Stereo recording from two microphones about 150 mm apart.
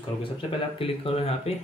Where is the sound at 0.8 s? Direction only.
40° left (ahead or behind).